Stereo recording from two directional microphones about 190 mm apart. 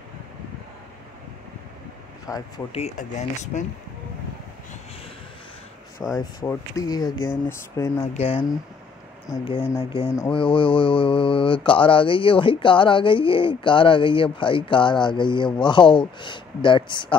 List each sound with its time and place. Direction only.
2.2 s speech: 20° left (ahead or behind)
2.7 s speech: 35° left (ahead or behind)
6.1 s speech: 20° left (ahead or behind)
8.1 s speech: 30° left (ahead or behind)